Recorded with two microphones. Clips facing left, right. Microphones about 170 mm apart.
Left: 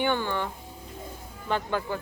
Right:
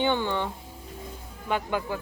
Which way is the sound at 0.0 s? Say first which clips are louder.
Right 1 dB; 20° right (ahead or behind).